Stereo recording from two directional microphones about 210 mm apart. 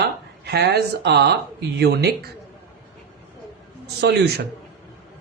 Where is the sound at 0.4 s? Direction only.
50° right (ahead or behind).